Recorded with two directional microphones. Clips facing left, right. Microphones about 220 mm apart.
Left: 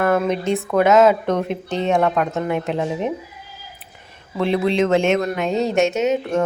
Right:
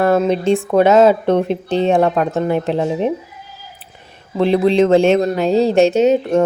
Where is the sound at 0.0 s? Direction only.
30° right (ahead or behind).